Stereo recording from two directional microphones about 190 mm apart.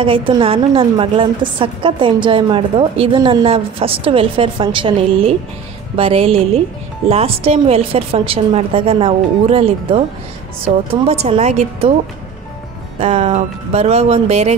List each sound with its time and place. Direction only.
0.0 s a woman's voice: 25° right (ahead or behind)
13.0 s a woman's voice: 35° right (ahead or behind)